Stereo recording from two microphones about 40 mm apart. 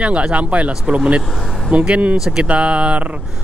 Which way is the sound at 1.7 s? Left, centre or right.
Right.